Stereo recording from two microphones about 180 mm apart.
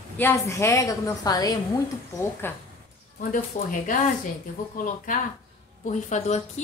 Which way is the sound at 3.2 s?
50° left (ahead or behind).